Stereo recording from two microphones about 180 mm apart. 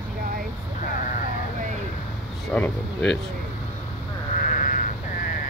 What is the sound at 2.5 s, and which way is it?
Speech, 5° left (ahead or behind).